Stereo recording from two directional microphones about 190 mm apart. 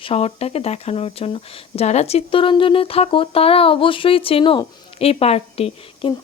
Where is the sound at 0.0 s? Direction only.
30° left (ahead or behind).